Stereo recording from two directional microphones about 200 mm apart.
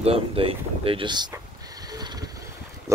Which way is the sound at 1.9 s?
20° right (ahead or behind).